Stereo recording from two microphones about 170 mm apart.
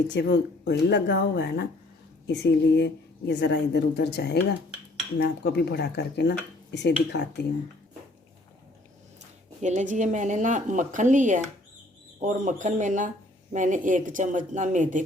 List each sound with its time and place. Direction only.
0.1 s a woman's voice: 90° left
9.6 s speech: 45° right (ahead or behind)